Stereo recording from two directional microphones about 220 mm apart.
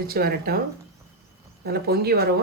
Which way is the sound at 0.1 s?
45° right (ahead or behind).